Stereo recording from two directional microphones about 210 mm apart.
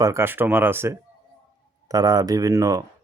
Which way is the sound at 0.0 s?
15° right (ahead or behind).